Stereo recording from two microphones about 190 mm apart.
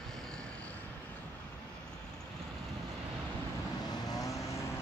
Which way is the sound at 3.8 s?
20° left (ahead or behind).